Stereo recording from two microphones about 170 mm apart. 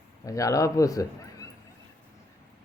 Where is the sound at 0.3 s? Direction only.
20° left (ahead or behind).